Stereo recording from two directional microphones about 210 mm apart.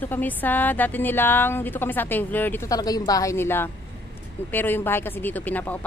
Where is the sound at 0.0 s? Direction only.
10° left (ahead or behind).